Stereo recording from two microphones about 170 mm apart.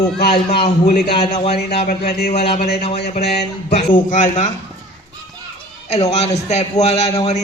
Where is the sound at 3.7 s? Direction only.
50° left (ahead or behind).